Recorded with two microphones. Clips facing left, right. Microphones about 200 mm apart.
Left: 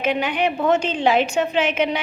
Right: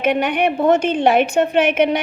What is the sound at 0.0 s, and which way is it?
A woman's voice, 60° right (ahead or behind).